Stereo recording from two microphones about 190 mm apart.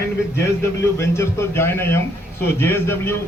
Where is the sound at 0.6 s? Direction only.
15° left (ahead or behind).